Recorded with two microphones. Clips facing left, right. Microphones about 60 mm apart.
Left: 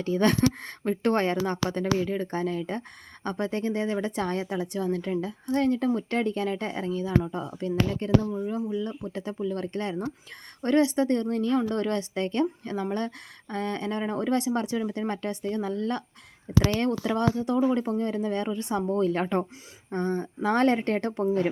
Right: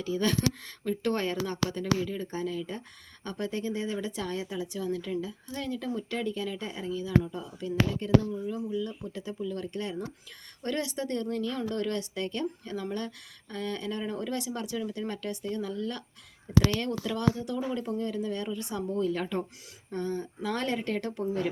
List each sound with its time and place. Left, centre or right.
0.0 s speech: left